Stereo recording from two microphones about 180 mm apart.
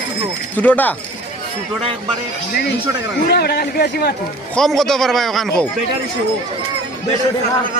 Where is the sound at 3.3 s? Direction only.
60° left (ahead or behind).